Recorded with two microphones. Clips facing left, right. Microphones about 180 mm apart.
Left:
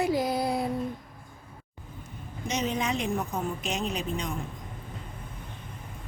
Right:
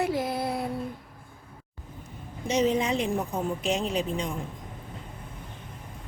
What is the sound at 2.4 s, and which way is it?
A woman's voice, 30° right (ahead or behind).